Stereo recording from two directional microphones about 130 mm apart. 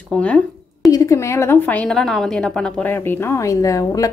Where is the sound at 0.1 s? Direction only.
10° left (ahead or behind).